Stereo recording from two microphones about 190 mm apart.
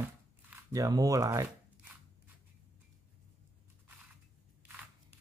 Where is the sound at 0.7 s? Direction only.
15° right (ahead or behind).